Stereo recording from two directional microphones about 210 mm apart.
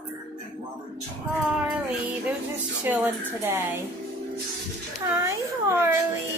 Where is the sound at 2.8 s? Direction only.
5° right (ahead or behind).